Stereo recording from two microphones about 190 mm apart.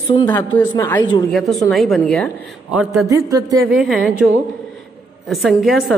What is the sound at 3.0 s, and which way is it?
Speech, 20° right (ahead or behind).